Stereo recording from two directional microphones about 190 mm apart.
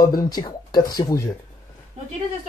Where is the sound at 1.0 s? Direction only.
20° left (ahead or behind).